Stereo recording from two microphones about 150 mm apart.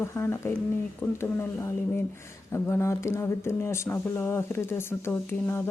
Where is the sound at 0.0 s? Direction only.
15° left (ahead or behind).